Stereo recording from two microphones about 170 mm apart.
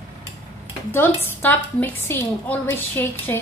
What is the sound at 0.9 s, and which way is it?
A woman's voice, 15° left (ahead or behind).